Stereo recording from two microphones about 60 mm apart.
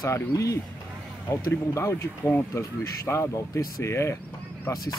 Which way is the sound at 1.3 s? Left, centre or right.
Left.